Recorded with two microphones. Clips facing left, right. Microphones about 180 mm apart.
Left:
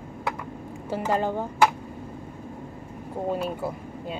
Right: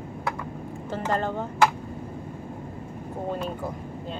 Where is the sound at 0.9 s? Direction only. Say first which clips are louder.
Left 2 dB; 10° left (ahead or behind).